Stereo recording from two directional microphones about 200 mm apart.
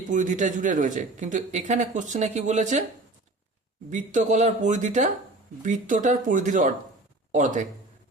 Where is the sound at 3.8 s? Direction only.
40° right (ahead or behind).